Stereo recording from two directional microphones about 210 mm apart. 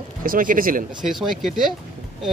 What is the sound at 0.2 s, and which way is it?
Speech, 40° right (ahead or behind).